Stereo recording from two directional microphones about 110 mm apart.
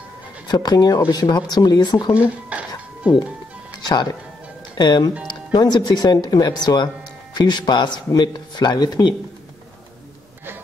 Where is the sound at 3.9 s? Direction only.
35° left (ahead or behind).